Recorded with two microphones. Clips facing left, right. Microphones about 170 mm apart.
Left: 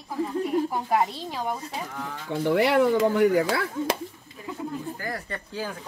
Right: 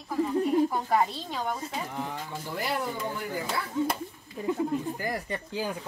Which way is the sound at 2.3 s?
70° left (ahead or behind).